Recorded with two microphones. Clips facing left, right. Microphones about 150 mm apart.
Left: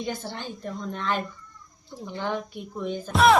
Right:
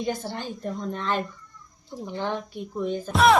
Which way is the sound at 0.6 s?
5° right (ahead or behind).